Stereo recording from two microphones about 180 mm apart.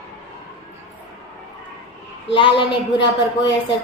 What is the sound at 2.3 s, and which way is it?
Speech, 30° left (ahead or behind).